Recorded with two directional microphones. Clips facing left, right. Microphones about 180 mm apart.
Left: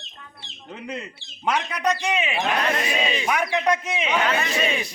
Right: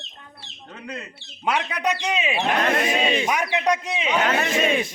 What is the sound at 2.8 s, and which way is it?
Speech, 50° right (ahead or behind).